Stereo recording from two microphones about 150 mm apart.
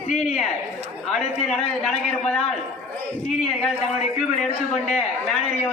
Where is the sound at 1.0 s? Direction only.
Centre (ahead or behind).